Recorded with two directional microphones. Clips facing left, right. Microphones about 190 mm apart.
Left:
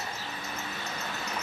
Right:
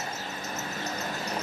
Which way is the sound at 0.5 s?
40° right (ahead or behind).